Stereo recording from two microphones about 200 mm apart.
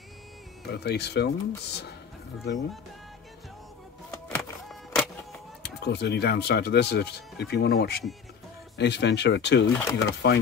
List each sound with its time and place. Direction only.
0.7 s speech: 55° left (ahead or behind)
4.4 s music: centre (ahead or behind)
5.6 s speech: 55° left (ahead or behind)